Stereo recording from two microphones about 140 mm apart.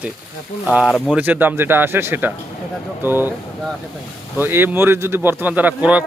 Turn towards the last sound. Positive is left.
turn(degrees=-10)  # may be behind; listen again after turning